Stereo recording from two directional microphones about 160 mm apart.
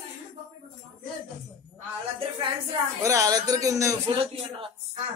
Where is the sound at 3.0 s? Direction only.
20° right (ahead or behind).